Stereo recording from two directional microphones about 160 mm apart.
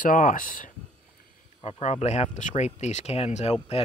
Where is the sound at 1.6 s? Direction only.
40° left (ahead or behind).